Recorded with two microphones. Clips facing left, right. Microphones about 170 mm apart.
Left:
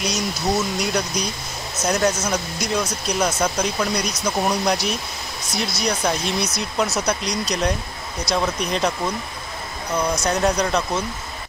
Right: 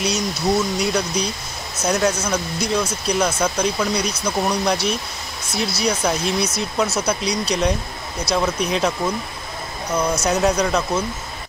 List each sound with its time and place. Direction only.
0.0 s speech: centre (ahead or behind)
10.2 s speech: 5° right (ahead or behind)